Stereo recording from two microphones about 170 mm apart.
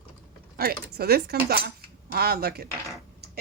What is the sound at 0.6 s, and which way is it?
Speech, 65° right (ahead or behind).